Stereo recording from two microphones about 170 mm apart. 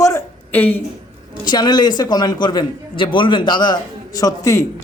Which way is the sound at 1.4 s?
25° left (ahead or behind).